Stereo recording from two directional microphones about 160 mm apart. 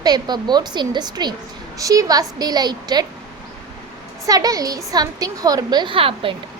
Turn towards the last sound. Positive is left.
turn(degrees=-35)  # may be behind; listen again after turning